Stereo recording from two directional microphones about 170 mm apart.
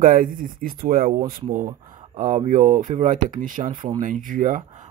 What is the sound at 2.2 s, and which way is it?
Speech, 45° right (ahead or behind).